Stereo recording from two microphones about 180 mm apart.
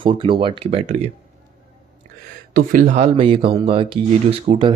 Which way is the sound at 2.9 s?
35° right (ahead or behind).